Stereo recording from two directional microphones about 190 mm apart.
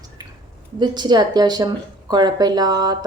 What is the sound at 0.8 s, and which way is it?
A woman's voice, 25° right (ahead or behind).